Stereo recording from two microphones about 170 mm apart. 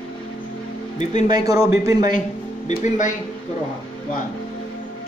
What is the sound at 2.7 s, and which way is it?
Speech, 45° left (ahead or behind).